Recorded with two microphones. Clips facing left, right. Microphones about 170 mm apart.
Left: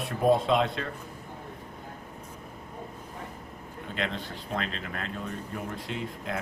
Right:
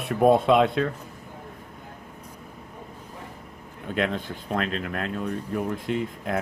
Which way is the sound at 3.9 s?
50° right (ahead or behind).